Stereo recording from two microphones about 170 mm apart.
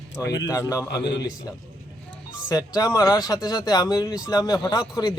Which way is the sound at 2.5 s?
20° left (ahead or behind).